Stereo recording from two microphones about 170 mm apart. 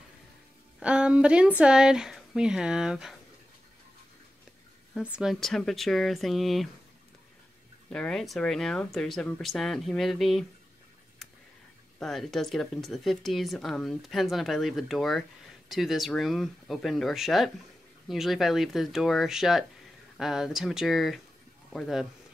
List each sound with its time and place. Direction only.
0.7 s speech: 5° right (ahead or behind)
5.1 s speech: centre (ahead or behind)
7.9 s speech: 5° left (ahead or behind)
12.0 s speech: centre (ahead or behind)